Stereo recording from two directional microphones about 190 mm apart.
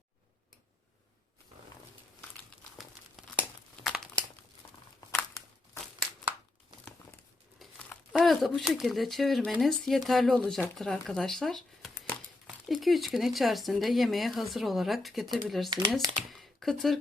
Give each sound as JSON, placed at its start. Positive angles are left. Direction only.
{"t": 3.8, "sound": "crumpling", "side_deg": 0}
{"t": 4.6, "sound": "a sound", "side_deg": 15}
{"t": 7.6, "sound": "crumpling", "side_deg": 5}
{"t": 8.1, "sound": "speech", "side_deg": 0}